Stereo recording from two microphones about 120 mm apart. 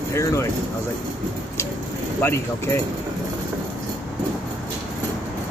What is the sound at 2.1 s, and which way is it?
Speech, 20° left (ahead or behind).